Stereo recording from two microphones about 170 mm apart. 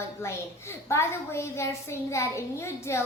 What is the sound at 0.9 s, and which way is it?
A child's voice, 15° left (ahead or behind).